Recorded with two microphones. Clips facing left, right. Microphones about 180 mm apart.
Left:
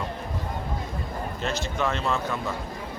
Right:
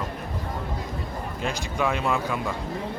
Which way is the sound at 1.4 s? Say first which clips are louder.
Right 1 dB; 10° right (ahead or behind).